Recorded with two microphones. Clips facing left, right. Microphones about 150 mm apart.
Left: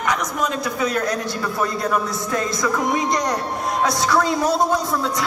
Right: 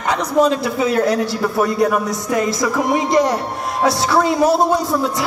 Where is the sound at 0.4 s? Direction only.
20° right (ahead or behind).